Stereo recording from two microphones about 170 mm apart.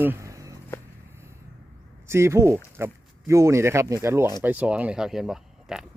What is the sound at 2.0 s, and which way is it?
Speech, 15° right (ahead or behind).